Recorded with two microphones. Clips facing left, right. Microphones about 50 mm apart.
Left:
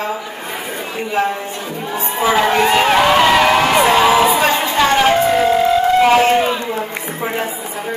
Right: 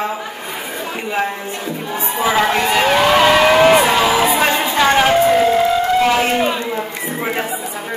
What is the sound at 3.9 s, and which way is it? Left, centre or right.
Crowd, centre.